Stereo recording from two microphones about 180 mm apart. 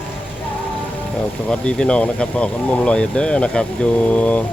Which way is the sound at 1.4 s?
5° left (ahead or behind).